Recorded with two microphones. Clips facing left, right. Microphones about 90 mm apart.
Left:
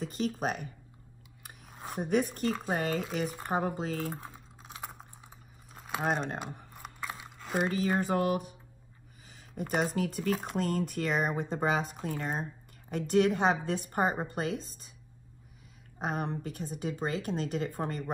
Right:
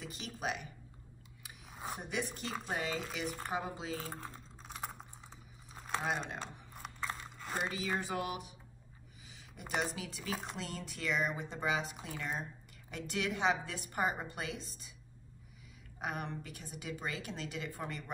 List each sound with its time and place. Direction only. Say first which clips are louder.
0.0 s speech: left 9 dB; 45° left (ahead or behind)
1.7 s a sound: even; 5° right (ahead or behind)
2.0 s speech: left 13 dB; 45° left (ahead or behind)
4.1 s typing: left 3 dB; 10° left (ahead or behind)
4.7 s computer keyboard: even; centre (ahead or behind)
5.8 s a sound: left 2 dB; 10° left (ahead or behind)
6.0 s speech: left 8 dB; 45° left (ahead or behind)
6.7 s biting: left 1 dB; 5° left (ahead or behind)
7.6 s speech: left 8 dB; 45° left (ahead or behind)
9.3 s a sound: left 6 dB; 45° left (ahead or behind)
9.9 s a woman's voice: left 10 dB; 50° left (ahead or behind)
16.0 s a woman's voice: left 6 dB; 40° left (ahead or behind)